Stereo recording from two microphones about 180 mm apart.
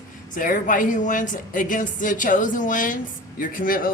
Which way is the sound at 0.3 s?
50° left (ahead or behind).